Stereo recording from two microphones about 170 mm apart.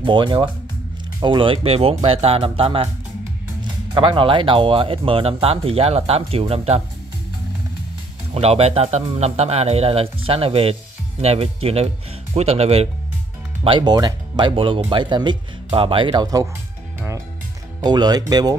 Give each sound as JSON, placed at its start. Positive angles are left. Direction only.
{"t": 0.0, "sound": "speech", "side_deg": -30}
{"t": 3.9, "sound": "speech", "side_deg": -30}
{"t": 8.4, "sound": "speech", "side_deg": -35}
{"t": 13.7, "sound": "speech", "side_deg": -25}
{"t": 17.8, "sound": "speech", "side_deg": -25}